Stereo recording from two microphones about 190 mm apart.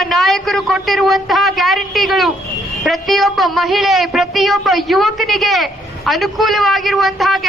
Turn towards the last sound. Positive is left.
turn(degrees=0)  # may be behind; listen again after turning